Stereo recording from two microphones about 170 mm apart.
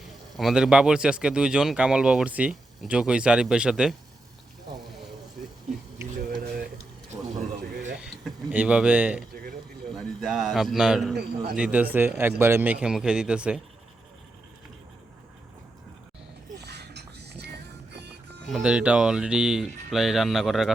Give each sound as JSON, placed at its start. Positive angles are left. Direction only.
{"t": 0.3, "sound": "speech", "side_deg": 0}
{"t": 8.0, "sound": "speech", "side_deg": -5}
{"t": 11.1, "sound": "a man's voice", "side_deg": -75}
{"t": 11.5, "sound": "speech", "side_deg": -5}
{"t": 16.6, "sound": "music", "side_deg": -75}
{"t": 18.4, "sound": "speech", "side_deg": 0}